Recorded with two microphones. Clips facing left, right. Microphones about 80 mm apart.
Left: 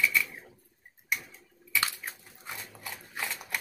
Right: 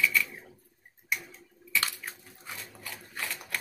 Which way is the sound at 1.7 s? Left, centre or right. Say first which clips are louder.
Even; centre.